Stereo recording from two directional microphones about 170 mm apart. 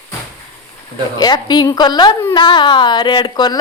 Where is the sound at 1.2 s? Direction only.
25° left (ahead or behind).